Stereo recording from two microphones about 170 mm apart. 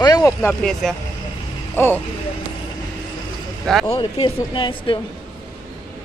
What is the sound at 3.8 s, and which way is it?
Speech, 30° left (ahead or behind).